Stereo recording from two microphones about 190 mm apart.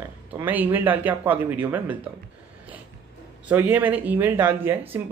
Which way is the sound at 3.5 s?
10° right (ahead or behind).